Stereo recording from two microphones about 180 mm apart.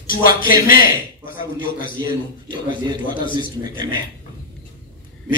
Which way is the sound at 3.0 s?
50° left (ahead or behind).